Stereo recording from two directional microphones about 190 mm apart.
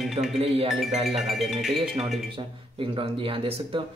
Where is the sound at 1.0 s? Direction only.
Centre (ahead or behind).